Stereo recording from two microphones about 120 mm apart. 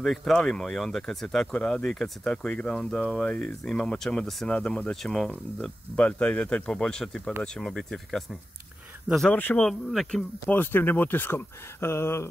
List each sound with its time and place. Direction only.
0.0 s speech: 5° left (ahead or behind)
9.6 s speech: centre (ahead or behind)
10.5 s speech: 15° left (ahead or behind)